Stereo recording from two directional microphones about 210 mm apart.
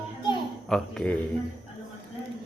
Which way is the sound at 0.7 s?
Centre (ahead or behind).